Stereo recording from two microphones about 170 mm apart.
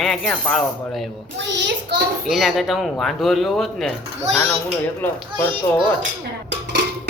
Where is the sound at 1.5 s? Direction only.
90° right.